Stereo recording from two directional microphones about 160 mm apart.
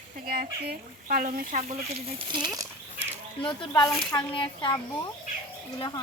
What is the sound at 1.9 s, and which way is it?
Speech, 35° right (ahead or behind).